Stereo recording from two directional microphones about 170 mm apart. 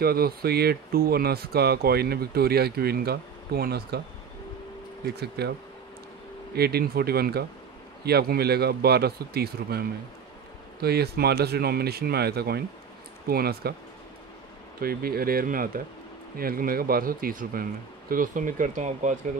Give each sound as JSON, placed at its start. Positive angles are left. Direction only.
{"t": 0.0, "sound": "speech", "side_deg": -65}
{"t": 5.0, "sound": "speech", "side_deg": -70}
{"t": 6.5, "sound": "speech", "side_deg": -70}
{"t": 14.8, "sound": "speech", "side_deg": -60}